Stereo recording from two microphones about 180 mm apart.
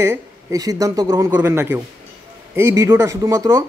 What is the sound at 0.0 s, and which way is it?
Speech, 15° right (ahead or behind).